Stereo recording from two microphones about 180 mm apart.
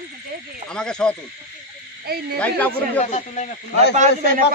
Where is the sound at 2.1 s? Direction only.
60° right (ahead or behind).